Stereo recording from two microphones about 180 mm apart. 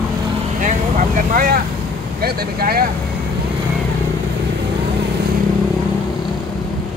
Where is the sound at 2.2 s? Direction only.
55° right (ahead or behind).